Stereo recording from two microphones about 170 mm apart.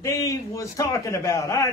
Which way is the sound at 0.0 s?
20° left (ahead or behind).